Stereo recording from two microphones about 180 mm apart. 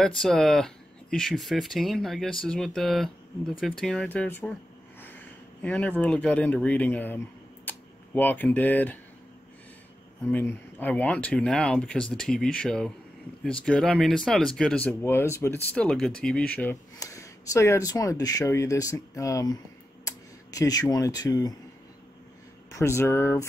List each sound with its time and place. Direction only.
0.0 s speech: 5° left (ahead or behind)
5.6 s speech: 10° left (ahead or behind)
10.2 s speech: 10° left (ahead or behind)
22.7 s speech: 15° left (ahead or behind)